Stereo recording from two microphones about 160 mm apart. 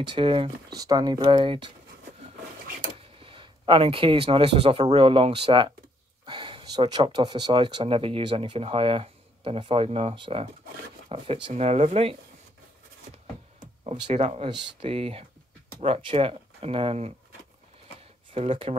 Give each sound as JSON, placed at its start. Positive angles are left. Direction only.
{"t": 0.0, "sound": "speech", "side_deg": -30}
{"t": 2.9, "sound": "speech", "side_deg": -35}
{"t": 13.8, "sound": "speech", "side_deg": -45}
{"t": 18.3, "sound": "speech", "side_deg": -35}